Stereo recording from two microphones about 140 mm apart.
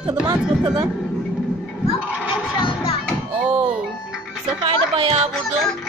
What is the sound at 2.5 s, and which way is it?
Music, 40° left (ahead or behind).